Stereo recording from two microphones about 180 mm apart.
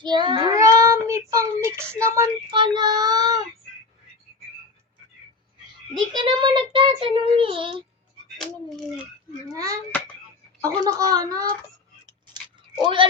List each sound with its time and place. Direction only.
0.0 s child singing: 25° right (ahead or behind)
6.1 s child singing: 25° right (ahead or behind)
9.5 s child singing: 20° right (ahead or behind)
12.8 s child singing: 30° right (ahead or behind)